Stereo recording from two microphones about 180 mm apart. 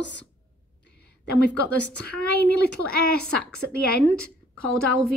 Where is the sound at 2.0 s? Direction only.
60° left (ahead or behind).